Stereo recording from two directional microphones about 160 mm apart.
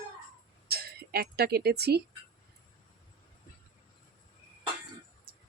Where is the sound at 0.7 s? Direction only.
75° right (ahead or behind).